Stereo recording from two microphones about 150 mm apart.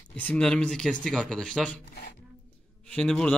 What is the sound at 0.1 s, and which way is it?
Speech, 10° left (ahead or behind).